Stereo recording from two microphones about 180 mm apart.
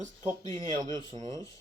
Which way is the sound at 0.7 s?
25° right (ahead or behind).